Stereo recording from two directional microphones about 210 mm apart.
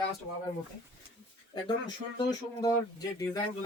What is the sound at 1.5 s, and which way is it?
Speech, 20° left (ahead or behind).